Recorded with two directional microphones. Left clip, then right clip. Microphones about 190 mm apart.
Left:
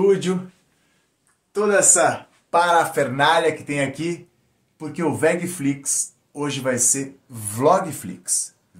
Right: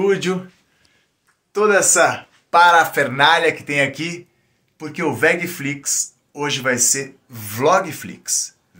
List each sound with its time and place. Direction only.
0.0 s speech: 5° right (ahead or behind)
1.5 s speech: 20° right (ahead or behind)
2.5 s speech: centre (ahead or behind)
4.7 s speech: 5° left (ahead or behind)